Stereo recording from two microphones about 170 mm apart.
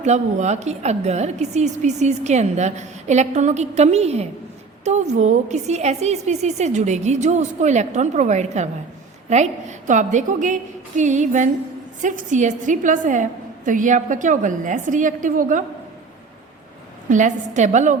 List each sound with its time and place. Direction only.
0.0 s a woman's voice: 45° right (ahead or behind)
17.1 s a woman's voice: 45° right (ahead or behind)